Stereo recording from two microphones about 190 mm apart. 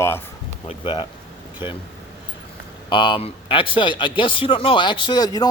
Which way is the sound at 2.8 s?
25° left (ahead or behind).